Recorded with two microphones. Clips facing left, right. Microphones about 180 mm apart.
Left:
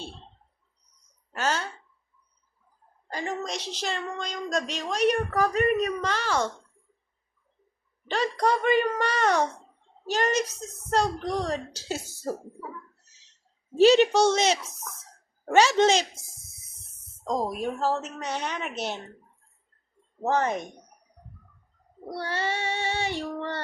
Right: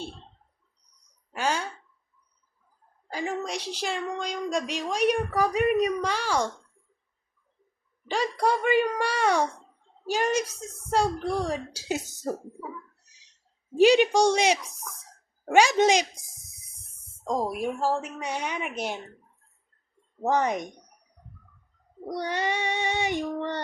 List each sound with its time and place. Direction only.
1.3 s a woman's voice: 10° right (ahead or behind)
3.1 s a woman's voice: 10° right (ahead or behind)
8.0 s a woman's voice: 10° right (ahead or behind)
13.7 s a woman's voice: 15° right (ahead or behind)
16.5 s a sound: 10° right (ahead or behind)
17.5 s a woman's voice: 10° right (ahead or behind)
20.2 s a woman's voice: 15° right (ahead or behind)
22.1 s a woman's voice: 15° right (ahead or behind)